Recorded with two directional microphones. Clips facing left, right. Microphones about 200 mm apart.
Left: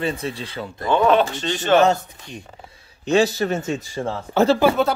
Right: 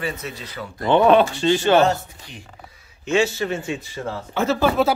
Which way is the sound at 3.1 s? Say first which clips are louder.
Left 2 dB; 40° left (ahead or behind).